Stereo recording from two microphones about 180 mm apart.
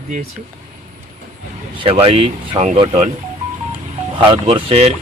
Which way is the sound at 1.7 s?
30° right (ahead or behind).